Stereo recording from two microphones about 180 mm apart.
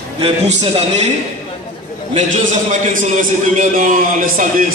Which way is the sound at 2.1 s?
45° right (ahead or behind).